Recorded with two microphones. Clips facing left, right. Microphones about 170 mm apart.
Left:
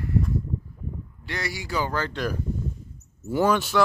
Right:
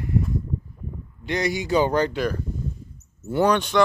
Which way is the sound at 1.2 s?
20° right (ahead or behind).